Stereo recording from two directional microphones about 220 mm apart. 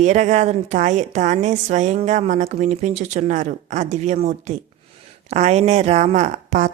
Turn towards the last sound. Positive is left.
turn(degrees=-30)  # may be behind; listen again after turning